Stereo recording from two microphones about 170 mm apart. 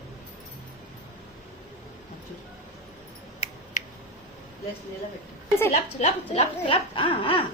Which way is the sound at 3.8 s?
45° left (ahead or behind).